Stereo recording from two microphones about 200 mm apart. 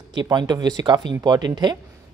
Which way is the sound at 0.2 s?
20° right (ahead or behind).